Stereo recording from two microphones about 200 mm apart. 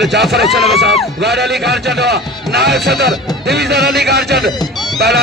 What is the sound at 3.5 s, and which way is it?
Speech, 55° right (ahead or behind).